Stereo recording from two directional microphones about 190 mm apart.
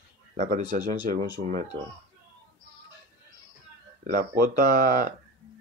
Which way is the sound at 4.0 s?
45° right (ahead or behind).